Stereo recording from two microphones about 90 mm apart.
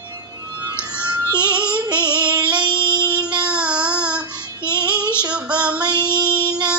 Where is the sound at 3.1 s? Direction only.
15° right (ahead or behind).